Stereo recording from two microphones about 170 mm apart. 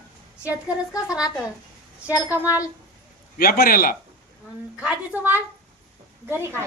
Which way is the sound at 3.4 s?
60° left (ahead or behind).